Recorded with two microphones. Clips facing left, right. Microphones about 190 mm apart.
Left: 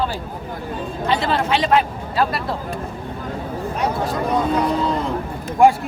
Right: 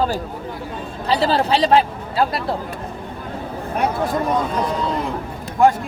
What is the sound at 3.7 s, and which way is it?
Speech, 55° right (ahead or behind).